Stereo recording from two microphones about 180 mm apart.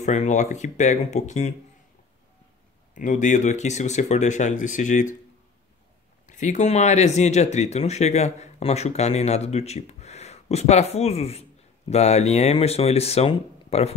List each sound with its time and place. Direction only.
0.0 s speech: 40° left (ahead or behind)
2.9 s speech: 45° left (ahead or behind)
6.2 s speech: 45° left (ahead or behind)